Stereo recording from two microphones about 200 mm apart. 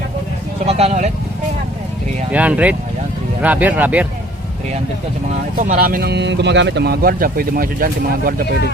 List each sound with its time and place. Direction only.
0.6 s speech: 30° right (ahead or behind)
2.3 s speech: 5° right (ahead or behind)
5.5 s speech: 40° right (ahead or behind)